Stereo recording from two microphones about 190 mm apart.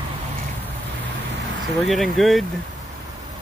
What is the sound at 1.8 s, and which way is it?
Speech, centre (ahead or behind).